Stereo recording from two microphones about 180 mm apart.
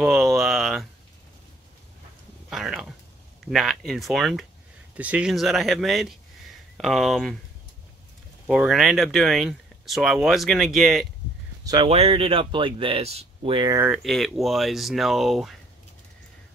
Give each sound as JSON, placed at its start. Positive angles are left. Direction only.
{"t": 0.0, "sound": "speech", "side_deg": 0}
{"t": 2.5, "sound": "speech", "side_deg": 0}
{"t": 8.5, "sound": "speech", "side_deg": -5}
{"t": 11.6, "sound": "speech", "side_deg": -25}
{"t": 13.7, "sound": "speech", "side_deg": -5}